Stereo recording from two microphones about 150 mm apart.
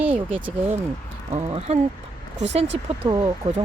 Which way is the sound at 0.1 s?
40° right (ahead or behind).